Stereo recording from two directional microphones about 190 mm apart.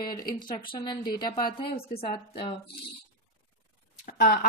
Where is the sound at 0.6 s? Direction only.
25° left (ahead or behind).